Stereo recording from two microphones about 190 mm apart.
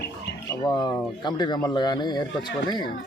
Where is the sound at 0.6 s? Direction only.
20° left (ahead or behind).